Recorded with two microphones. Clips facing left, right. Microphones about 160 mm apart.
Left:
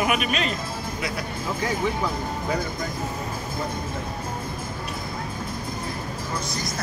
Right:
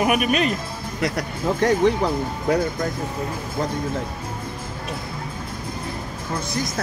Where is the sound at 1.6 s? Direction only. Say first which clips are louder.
Right 9 dB; 70° right (ahead or behind).